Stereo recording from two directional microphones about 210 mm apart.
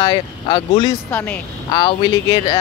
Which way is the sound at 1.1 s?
10° left (ahead or behind).